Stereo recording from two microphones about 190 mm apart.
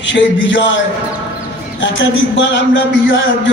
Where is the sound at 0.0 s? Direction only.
75° left (ahead or behind).